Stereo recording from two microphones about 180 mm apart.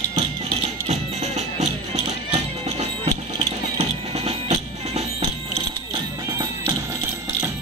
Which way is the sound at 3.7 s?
35° right (ahead or behind).